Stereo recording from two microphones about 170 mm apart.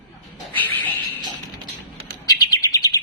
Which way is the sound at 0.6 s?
10° left (ahead or behind).